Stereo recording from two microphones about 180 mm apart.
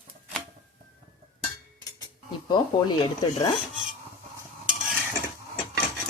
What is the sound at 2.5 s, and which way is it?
Speech, 25° left (ahead or behind).